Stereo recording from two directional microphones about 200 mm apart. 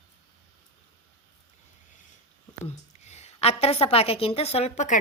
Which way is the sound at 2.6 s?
35° left (ahead or behind).